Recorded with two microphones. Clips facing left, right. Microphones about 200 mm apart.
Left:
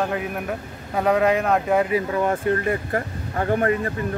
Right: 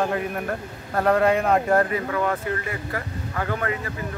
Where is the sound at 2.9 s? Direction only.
30° left (ahead or behind).